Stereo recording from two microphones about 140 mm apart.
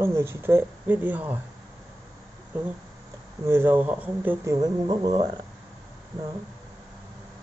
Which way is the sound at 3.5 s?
15° right (ahead or behind).